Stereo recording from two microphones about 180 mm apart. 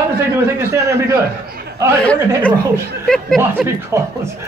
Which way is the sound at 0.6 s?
15° right (ahead or behind).